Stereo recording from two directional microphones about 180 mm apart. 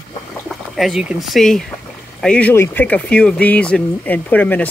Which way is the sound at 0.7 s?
Centre (ahead or behind).